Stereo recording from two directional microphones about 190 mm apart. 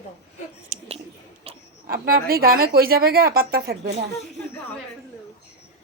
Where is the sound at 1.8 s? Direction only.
50° right (ahead or behind).